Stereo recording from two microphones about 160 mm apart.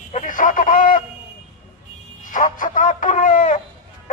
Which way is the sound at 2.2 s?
50° left (ahead or behind).